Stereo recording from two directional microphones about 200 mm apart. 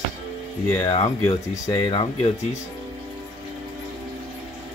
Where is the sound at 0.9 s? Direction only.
30° left (ahead or behind).